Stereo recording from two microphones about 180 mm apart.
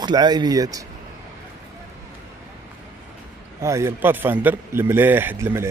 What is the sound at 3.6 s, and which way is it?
A man's voice, 15° right (ahead or behind).